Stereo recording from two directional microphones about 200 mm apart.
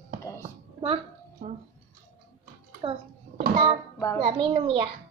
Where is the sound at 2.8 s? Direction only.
25° right (ahead or behind).